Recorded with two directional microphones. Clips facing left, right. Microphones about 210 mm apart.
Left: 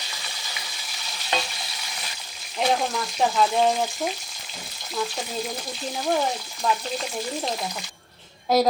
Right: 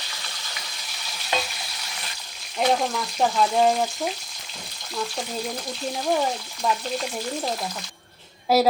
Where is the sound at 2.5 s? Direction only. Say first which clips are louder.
Right 1 dB; centre (ahead or behind).